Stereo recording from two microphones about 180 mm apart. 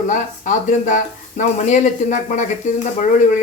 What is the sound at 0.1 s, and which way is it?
Speech, 45° left (ahead or behind).